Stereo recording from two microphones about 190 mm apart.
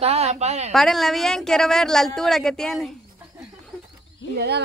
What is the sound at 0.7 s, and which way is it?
A woman's voice, centre (ahead or behind).